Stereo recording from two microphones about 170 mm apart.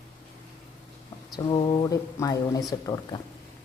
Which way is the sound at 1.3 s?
25° left (ahead or behind).